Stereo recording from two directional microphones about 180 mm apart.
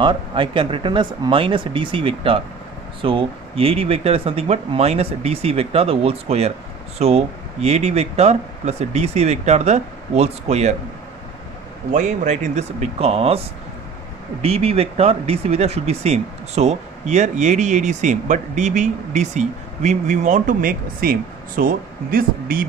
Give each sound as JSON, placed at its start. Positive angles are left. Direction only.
{"t": 0.0, "sound": "speech", "side_deg": -25}
{"t": 11.9, "sound": "speech", "side_deg": -45}
{"t": 14.4, "sound": "speech", "side_deg": -35}